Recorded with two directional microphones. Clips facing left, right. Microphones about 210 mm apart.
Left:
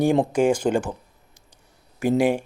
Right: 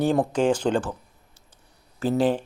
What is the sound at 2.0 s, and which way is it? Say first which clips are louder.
Speech: left 2 dB; 10° left (ahead or behind).